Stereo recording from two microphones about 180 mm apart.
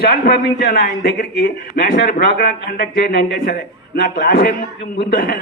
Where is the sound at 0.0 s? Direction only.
60° left (ahead or behind).